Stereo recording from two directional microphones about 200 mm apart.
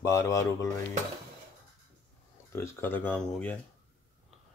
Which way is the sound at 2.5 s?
15° left (ahead or behind).